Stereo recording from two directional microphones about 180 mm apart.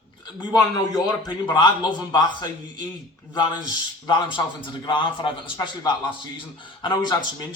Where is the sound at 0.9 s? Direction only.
25° left (ahead or behind).